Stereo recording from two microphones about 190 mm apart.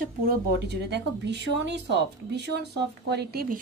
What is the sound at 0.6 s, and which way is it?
Speech, 60° right (ahead or behind).